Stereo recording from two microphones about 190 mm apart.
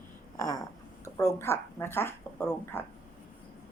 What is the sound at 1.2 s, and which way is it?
Speech, 15° left (ahead or behind).